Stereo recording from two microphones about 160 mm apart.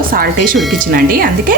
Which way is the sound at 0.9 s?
70° right (ahead or behind).